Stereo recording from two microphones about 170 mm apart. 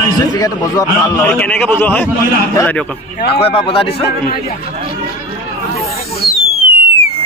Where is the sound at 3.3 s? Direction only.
35° left (ahead or behind).